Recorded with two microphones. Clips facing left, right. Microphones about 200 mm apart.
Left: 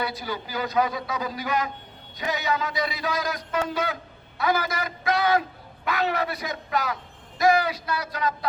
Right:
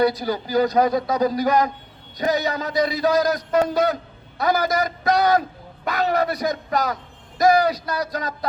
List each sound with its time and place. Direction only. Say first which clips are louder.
0.0 s a man's voice: right 10 dB; 40° right (ahead or behind)